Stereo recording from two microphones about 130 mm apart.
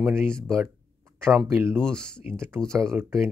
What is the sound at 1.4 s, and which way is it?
Speech, 20° right (ahead or behind).